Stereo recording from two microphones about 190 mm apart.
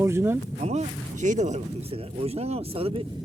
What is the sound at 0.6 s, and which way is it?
Speech, 35° right (ahead or behind).